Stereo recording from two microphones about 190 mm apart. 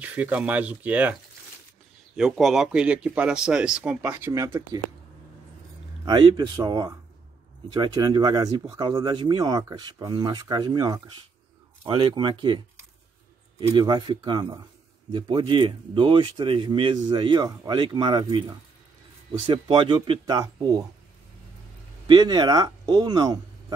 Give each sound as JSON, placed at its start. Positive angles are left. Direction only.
{"t": 0.0, "sound": "speech", "side_deg": -5}
{"t": 2.1, "sound": "speech", "side_deg": 0}
{"t": 6.0, "sound": "speech", "side_deg": -20}
{"t": 19.4, "sound": "speech", "side_deg": -25}
{"t": 22.0, "sound": "speech", "side_deg": -25}